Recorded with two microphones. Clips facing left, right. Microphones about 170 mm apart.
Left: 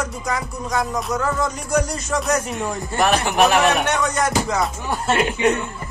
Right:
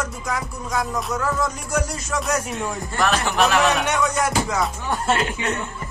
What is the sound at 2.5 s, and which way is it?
Speech, 20° left (ahead or behind).